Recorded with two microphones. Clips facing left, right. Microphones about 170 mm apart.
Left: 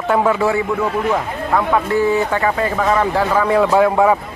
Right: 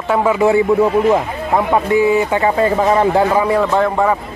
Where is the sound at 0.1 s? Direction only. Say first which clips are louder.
Right 1 dB; 5° right (ahead or behind).